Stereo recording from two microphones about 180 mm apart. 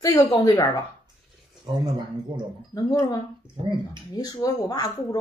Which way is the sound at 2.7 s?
20° left (ahead or behind).